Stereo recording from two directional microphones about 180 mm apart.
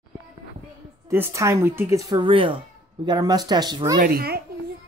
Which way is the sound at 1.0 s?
15° right (ahead or behind).